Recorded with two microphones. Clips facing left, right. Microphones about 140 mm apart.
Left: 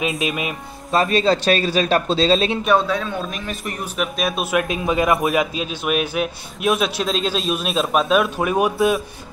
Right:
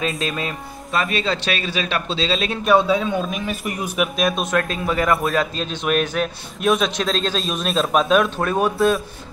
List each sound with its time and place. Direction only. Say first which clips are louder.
0.0 s a man's voice: left 1 dB; 20° left (ahead or behind)
0.9 s speech: left 5 dB; 35° left (ahead or behind)
2.6 s a man's voice: right 2 dB; 10° right (ahead or behind)
4.2 s a man's voice: left 1 dB; 5° left (ahead or behind)
8.7 s speech: even; centre (ahead or behind)